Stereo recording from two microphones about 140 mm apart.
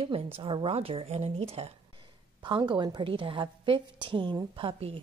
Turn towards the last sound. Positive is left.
turn(degrees=-40)  # may be behind; listen again after turning